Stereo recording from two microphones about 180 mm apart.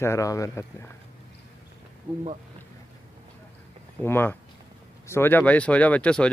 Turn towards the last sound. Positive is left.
turn(degrees=5)  # may be behind; listen again after turning